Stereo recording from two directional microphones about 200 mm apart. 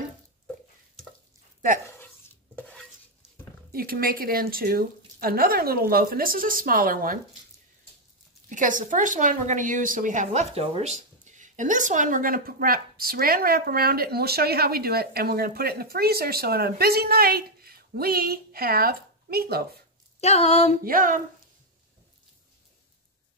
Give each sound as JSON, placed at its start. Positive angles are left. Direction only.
{"t": 2.5, "sound": "dishes", "side_deg": 10}
{"t": 3.7, "sound": "speech", "side_deg": -45}
{"t": 8.5, "sound": "speech", "side_deg": -40}
{"t": 20.2, "sound": "speech", "side_deg": 30}
{"t": 20.8, "sound": "speech", "side_deg": -45}